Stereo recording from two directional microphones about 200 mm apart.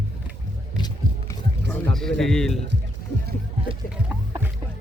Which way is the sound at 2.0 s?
Centre (ahead or behind).